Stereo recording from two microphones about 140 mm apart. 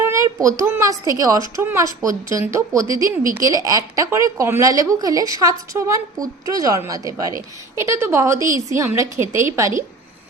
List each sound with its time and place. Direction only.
0.0 s a woman's voice: 20° right (ahead or behind)